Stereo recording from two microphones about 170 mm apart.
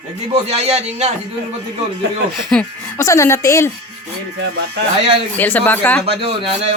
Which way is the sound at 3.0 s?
20° left (ahead or behind).